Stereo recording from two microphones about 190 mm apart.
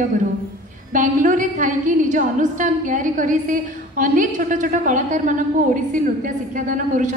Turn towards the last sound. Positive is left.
turn(degrees=-45)  # may be behind; listen again after turning